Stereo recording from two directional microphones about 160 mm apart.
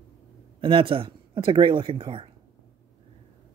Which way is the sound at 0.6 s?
35° right (ahead or behind).